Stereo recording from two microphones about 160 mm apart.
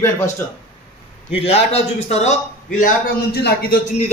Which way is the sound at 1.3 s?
40° left (ahead or behind).